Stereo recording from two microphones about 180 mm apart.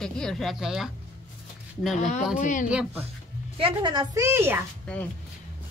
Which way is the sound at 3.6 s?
30° right (ahead or behind).